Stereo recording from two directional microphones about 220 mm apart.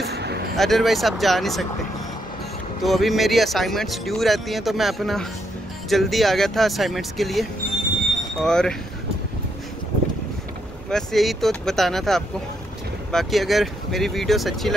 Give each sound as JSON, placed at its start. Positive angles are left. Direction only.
{"t": 0.1, "sound": "vehicle", "side_deg": -50}
{"t": 0.6, "sound": "speech", "side_deg": 0}
{"t": 2.8, "sound": "speech", "side_deg": 0}
{"t": 10.9, "sound": "speech", "side_deg": 0}